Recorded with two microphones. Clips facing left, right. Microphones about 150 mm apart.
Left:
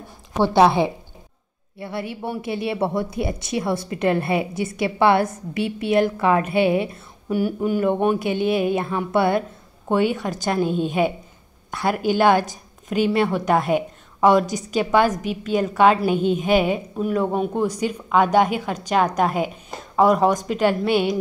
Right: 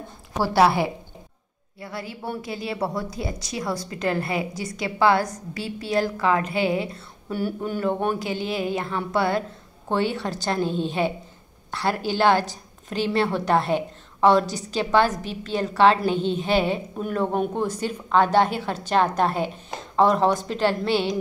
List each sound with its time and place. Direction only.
0.4 s a woman's voice: 20° left (ahead or behind)
7.2 s a woman's voice: 10° left (ahead or behind)